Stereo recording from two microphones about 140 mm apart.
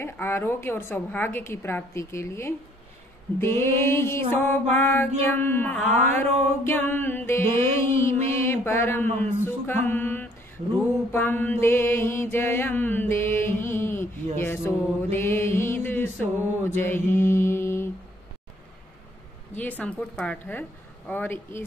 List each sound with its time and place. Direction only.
0.0 s a woman's voice: 15° left (ahead or behind)
9.2 s a sound: 15° left (ahead or behind)
11.1 s a woman's voice: 15° left (ahead or behind)
14.4 s mantra: 15° left (ahead or behind)
19.5 s a woman's voice: 10° left (ahead or behind)